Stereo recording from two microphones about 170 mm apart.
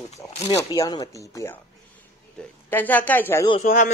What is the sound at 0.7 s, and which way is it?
Speech, 20° left (ahead or behind).